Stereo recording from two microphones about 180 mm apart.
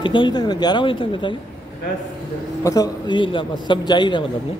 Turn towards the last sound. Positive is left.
turn(degrees=25)  # may be behind; listen again after turning